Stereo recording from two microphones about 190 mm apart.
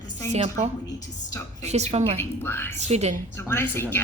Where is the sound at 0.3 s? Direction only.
40° right (ahead or behind).